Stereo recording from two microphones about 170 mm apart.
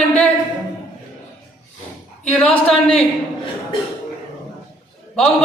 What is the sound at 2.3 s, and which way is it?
Speech, 5° left (ahead or behind).